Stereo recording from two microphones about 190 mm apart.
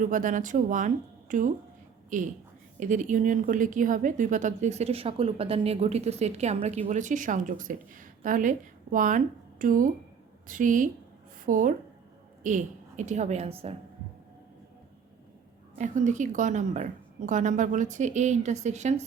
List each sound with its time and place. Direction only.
0.0 s speech: 45° right (ahead or behind)
2.7 s a woman's voice: 40° right (ahead or behind)
15.8 s a woman's voice: 40° right (ahead or behind)